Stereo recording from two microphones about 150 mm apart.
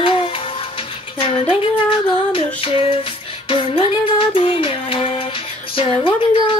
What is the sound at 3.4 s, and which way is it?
Music, 35° left (ahead or behind).